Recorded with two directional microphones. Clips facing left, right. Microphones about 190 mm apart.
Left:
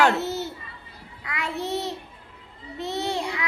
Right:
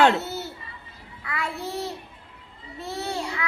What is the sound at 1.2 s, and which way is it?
Child singing, 20° left (ahead or behind).